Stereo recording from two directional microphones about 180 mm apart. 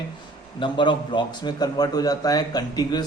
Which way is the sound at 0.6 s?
25° left (ahead or behind).